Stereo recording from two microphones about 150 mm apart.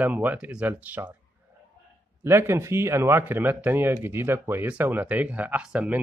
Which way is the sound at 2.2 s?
15° right (ahead or behind).